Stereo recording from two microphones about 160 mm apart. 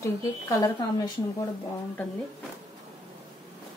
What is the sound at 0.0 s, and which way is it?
A woman's voice, 20° left (ahead or behind).